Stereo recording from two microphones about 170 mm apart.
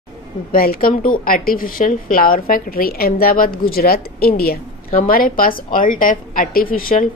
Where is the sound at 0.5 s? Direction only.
60° left (ahead or behind).